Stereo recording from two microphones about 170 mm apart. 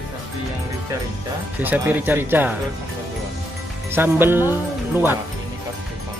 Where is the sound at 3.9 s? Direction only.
15° right (ahead or behind).